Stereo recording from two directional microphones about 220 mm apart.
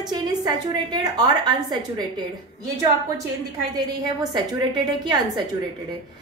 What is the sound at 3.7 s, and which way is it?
A woman's voice, 15° right (ahead or behind).